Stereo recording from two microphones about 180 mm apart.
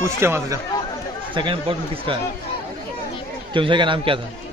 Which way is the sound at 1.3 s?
30° right (ahead or behind).